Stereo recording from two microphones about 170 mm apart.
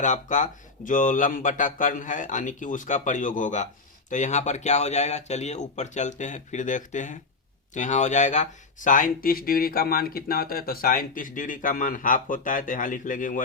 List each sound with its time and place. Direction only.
0.0 s speech: 45° left (ahead or behind)